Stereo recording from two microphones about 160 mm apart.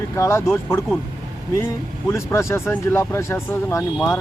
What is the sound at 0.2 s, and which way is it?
Speech, 15° left (ahead or behind).